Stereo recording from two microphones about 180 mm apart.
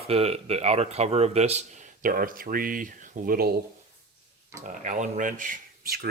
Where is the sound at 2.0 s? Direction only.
50° right (ahead or behind).